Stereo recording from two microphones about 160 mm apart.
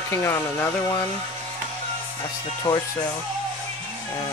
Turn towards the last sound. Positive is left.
turn(degrees=25)  # may be behind; listen again after turning